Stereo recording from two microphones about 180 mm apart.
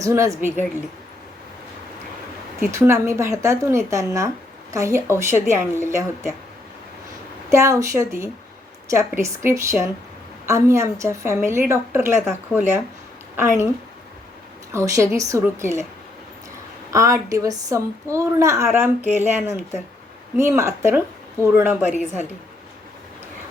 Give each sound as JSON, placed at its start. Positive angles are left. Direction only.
{"t": 0.0, "sound": "a woman's voice", "side_deg": -15}
{"t": 2.6, "sound": "a woman's voice", "side_deg": -15}
{"t": 7.5, "sound": "a woman's voice", "side_deg": -15}
{"t": 13.3, "sound": "a woman's voice", "side_deg": -10}
{"t": 14.7, "sound": "a woman's voice", "side_deg": -15}
{"t": 16.9, "sound": "a woman's voice", "side_deg": -15}
{"t": 20.3, "sound": "a woman's voice", "side_deg": -15}
{"t": 21.9, "sound": "a woman's voice", "side_deg": 40}